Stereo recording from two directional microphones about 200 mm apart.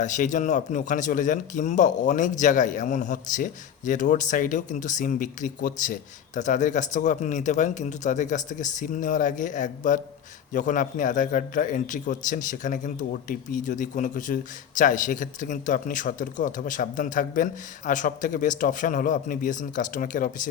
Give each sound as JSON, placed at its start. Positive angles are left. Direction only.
{"t": 0.0, "sound": "speech", "side_deg": 40}